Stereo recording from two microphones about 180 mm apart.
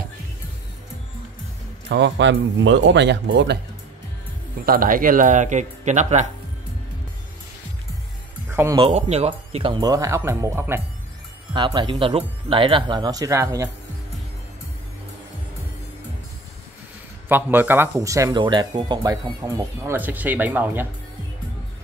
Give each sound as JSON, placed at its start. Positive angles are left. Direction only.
{"t": 1.9, "sound": "speech", "side_deg": -80}
{"t": 4.6, "sound": "speech", "side_deg": -50}
{"t": 8.5, "sound": "speech", "side_deg": -15}
{"t": 8.8, "sound": "speech", "side_deg": -35}
{"t": 11.5, "sound": "speech", "side_deg": -25}
{"t": 17.3, "sound": "speech", "side_deg": -10}